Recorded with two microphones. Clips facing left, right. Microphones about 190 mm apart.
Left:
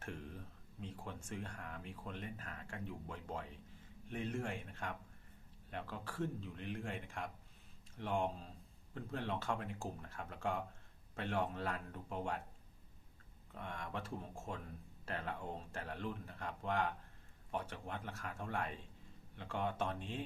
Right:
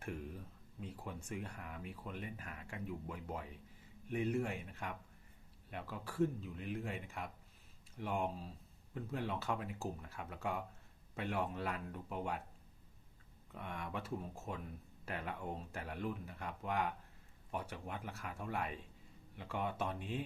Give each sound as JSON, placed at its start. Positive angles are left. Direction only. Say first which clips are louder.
{"t": 0.0, "sound": "speech", "louder": "right 3 dB", "side_deg": -10}
{"t": 13.5, "sound": "speech", "louder": "right 1 dB", "side_deg": -10}